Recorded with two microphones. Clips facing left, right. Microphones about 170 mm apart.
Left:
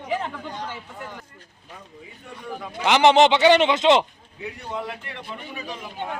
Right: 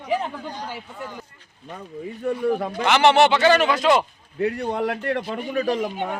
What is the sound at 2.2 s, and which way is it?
Speech, 60° right (ahead or behind).